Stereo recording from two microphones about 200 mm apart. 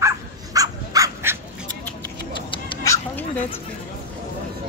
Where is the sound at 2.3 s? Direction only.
25° left (ahead or behind).